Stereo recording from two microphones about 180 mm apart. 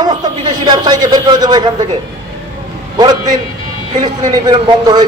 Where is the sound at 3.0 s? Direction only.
20° right (ahead or behind).